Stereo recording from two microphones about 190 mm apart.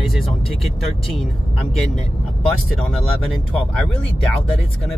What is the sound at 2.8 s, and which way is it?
Speech, 5° left (ahead or behind).